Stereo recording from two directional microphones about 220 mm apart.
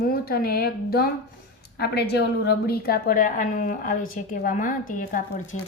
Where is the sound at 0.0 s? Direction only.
45° left (ahead or behind).